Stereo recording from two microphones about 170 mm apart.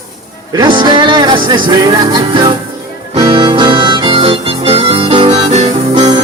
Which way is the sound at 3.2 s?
30° right (ahead or behind).